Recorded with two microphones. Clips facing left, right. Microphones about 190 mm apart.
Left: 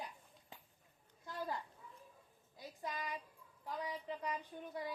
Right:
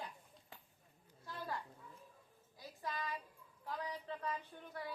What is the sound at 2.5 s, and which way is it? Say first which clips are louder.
Music: even; 20° left (ahead or behind).